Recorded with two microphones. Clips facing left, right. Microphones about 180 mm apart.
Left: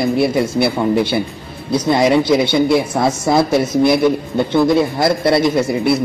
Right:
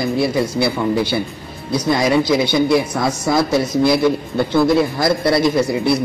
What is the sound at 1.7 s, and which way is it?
A man's voice, 25° left (ahead or behind).